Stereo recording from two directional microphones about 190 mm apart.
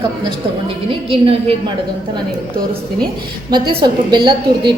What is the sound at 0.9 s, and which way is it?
Speech, 30° right (ahead or behind).